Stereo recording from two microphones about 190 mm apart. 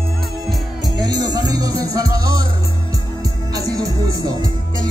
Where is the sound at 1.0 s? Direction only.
20° right (ahead or behind).